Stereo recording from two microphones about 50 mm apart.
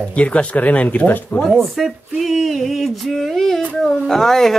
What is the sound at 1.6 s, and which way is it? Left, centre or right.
Speech, centre.